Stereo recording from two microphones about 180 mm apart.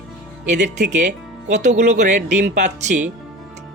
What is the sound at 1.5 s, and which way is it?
Speech, 40° right (ahead or behind).